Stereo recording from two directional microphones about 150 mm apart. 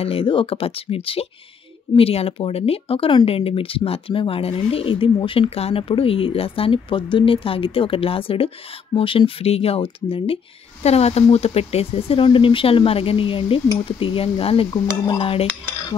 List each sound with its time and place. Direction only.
0.0 s speech: 40° left (ahead or behind)